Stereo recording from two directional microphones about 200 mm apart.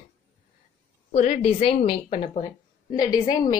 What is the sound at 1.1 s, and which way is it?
A woman's voice, 35° left (ahead or behind).